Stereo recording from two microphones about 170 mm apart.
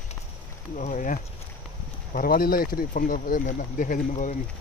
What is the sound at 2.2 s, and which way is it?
Speech, 60° left (ahead or behind).